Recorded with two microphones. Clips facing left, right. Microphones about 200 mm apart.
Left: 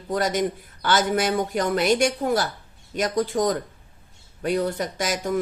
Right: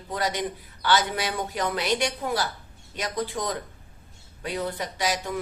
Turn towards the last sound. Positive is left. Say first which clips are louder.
# left 4 dB
turn(degrees=45)  # may be behind; listen again after turning